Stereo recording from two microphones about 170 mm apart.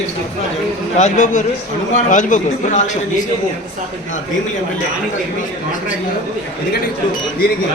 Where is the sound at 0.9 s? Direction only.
45° left (ahead or behind).